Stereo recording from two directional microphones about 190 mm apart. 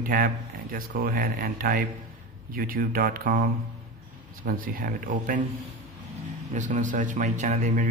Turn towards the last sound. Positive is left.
turn(degrees=-40)  # may be behind; listen again after turning